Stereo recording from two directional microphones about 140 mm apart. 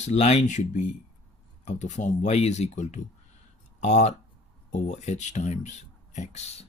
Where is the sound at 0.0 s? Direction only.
55° left (ahead or behind).